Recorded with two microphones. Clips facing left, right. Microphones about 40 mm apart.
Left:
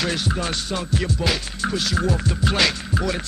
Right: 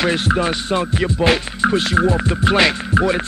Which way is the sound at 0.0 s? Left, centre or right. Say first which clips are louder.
Right 7 dB; right.